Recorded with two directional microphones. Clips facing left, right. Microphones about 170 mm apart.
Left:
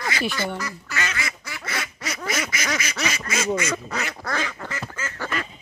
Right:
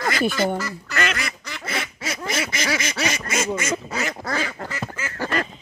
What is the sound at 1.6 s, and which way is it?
Quack, 25° right (ahead or behind).